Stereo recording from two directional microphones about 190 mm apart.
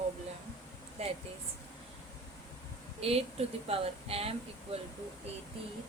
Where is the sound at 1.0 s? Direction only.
35° right (ahead or behind).